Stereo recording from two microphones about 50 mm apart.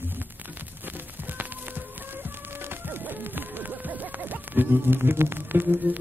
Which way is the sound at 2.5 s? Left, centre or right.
Right.